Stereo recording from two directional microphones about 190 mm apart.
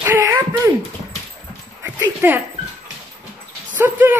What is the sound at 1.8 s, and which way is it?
Speech, 10° right (ahead or behind).